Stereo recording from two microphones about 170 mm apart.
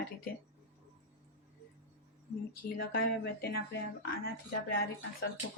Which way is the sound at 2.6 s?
60° left (ahead or behind).